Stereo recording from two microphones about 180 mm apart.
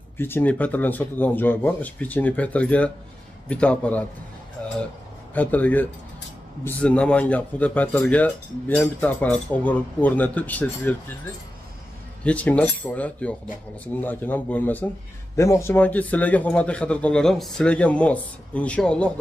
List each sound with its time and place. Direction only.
0.2 s speech: 10° left (ahead or behind)
4.6 s a sound: 5° left (ahead or behind)
5.3 s speech: 10° left (ahead or behind)
12.3 s speech: 10° left (ahead or behind)